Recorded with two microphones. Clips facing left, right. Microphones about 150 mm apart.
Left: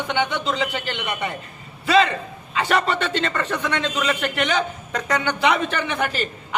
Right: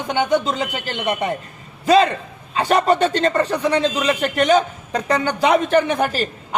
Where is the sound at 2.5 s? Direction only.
40° right (ahead or behind).